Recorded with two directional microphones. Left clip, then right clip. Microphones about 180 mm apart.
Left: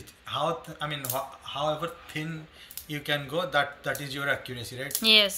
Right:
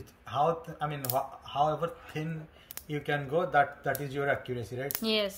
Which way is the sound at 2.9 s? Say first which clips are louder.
Left 1 dB; 45° right (ahead or behind).